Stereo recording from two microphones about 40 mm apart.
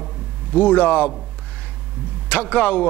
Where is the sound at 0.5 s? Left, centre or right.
Left.